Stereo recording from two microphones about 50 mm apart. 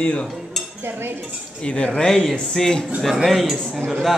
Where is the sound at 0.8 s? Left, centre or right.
Right.